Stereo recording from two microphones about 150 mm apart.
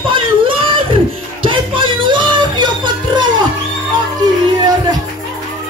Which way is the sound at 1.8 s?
35° right (ahead or behind).